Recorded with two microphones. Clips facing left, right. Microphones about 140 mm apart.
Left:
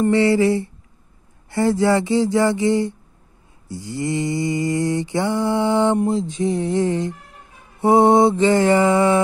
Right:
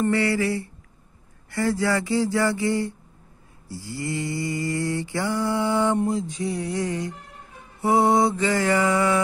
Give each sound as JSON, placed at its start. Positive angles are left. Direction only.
{"t": 0.0, "sound": "mantra", "side_deg": 25}